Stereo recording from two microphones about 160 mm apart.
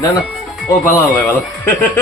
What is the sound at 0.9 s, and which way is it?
Speech, 15° left (ahead or behind).